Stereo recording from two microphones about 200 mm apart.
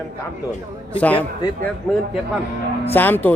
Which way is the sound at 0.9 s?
5° left (ahead or behind).